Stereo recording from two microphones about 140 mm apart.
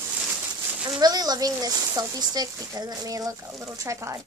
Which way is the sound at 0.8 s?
30° right (ahead or behind).